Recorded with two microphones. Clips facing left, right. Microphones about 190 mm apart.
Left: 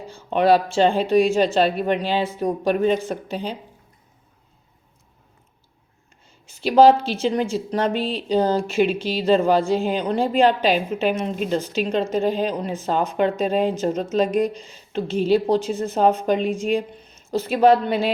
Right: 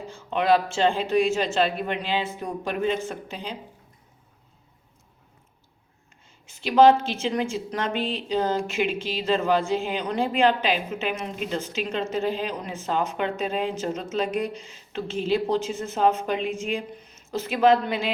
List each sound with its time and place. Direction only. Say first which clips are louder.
0.3 s a woman's voice: left 4 dB; 40° left (ahead or behind)
6.4 s a woman's voice: left 3 dB; 35° left (ahead or behind)